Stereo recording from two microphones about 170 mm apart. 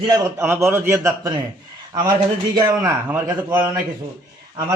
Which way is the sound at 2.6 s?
15° right (ahead or behind).